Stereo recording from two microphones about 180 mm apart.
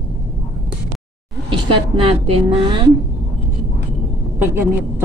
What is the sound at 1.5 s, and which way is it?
Speech, 30° right (ahead or behind).